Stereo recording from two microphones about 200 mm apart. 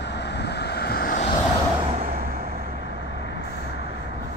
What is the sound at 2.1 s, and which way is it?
Vehicle, 45° right (ahead or behind).